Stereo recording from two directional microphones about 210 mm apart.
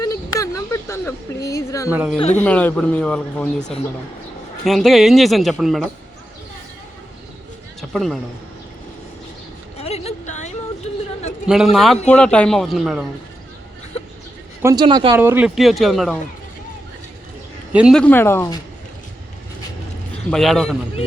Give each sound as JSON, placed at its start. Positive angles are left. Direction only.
{"t": 0.0, "sound": "a sound", "side_deg": 15}
{"t": 1.9, "sound": "speech", "side_deg": -10}
{"t": 2.1, "sound": "speech", "side_deg": 30}
{"t": 2.4, "sound": "a man's voice", "side_deg": 5}
{"t": 4.6, "sound": "a man's voice", "side_deg": 0}
{"t": 7.8, "sound": "a sound", "side_deg": 0}
{"t": 9.7, "sound": "a sound", "side_deg": 30}
{"t": 11.4, "sound": "a man's voice", "side_deg": 0}
{"t": 14.6, "sound": "speech", "side_deg": -20}
{"t": 17.7, "sound": "a man's voice", "side_deg": -5}
{"t": 20.3, "sound": "a man's voice", "side_deg": 0}